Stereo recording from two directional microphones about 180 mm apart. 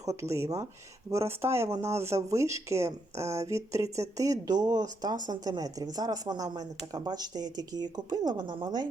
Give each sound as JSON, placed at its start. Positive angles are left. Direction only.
{"t": 0.0, "sound": "speech", "side_deg": -15}